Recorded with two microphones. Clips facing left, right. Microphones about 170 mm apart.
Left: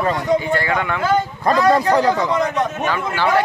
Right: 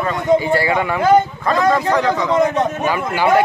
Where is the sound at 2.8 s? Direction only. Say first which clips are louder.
Right 2 dB; 10° right (ahead or behind).